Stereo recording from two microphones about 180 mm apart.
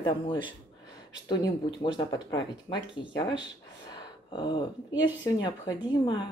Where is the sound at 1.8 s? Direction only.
25° left (ahead or behind).